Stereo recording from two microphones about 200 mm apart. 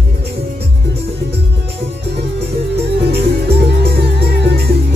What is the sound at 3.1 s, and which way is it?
Music, 55° right (ahead or behind).